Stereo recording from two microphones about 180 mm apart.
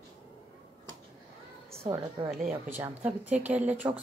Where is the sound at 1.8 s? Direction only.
25° right (ahead or behind).